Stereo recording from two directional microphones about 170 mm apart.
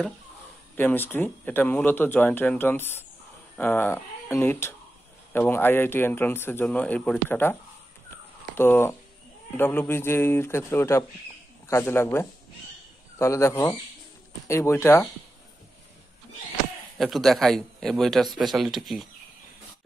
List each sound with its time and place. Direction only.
0.7 s speech: 10° left (ahead or behind)
8.5 s speech: 15° left (ahead or behind)
17.0 s a man's voice: centre (ahead or behind)